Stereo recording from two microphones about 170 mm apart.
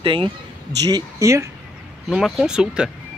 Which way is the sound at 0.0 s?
30° right (ahead or behind).